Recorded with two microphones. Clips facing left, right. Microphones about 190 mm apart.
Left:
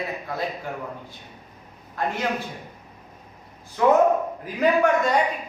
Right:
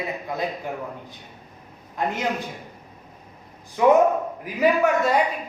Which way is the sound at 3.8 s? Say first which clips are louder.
Right 1 dB; 15° right (ahead or behind).